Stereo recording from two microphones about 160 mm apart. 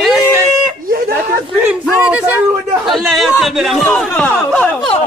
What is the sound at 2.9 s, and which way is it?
A man's voice, centre (ahead or behind).